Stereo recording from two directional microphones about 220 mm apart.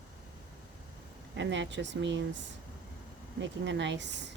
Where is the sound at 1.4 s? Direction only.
55° right (ahead or behind).